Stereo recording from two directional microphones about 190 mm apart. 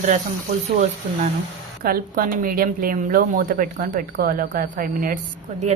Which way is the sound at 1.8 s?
50° right (ahead or behind).